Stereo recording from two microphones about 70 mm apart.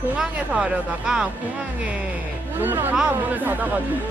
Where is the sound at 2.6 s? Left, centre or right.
Right.